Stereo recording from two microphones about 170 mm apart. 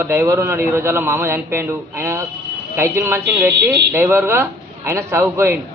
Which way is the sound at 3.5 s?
75° right (ahead or behind).